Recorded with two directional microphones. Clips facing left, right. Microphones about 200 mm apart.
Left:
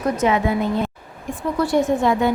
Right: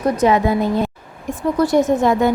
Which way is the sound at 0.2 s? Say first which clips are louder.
Right 4 dB; 40° right (ahead or behind).